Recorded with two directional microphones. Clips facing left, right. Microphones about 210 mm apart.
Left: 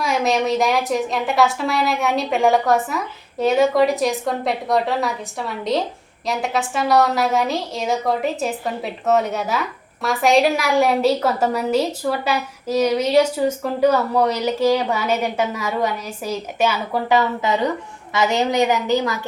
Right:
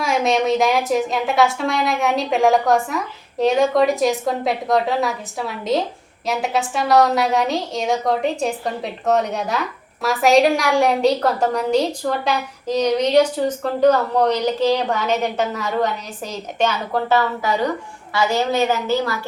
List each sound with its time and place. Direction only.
0.0 s a woman's voice: centre (ahead or behind); by 19.2 s 20° left (ahead or behind)